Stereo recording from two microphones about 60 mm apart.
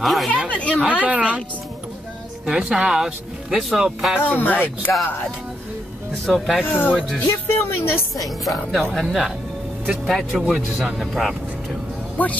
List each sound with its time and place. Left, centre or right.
0.0 s speech: centre
0.5 s speech: left
1.0 s a woman's voice: right
2.4 s speech: centre
4.2 s speech: left
6.3 s speech: centre
6.6 s speech: left
7.2 s speech: left
8.2 s speech: centre
12.2 s speech: left